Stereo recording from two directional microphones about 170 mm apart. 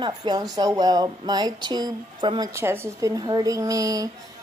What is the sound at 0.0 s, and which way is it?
Speech, 25° right (ahead or behind).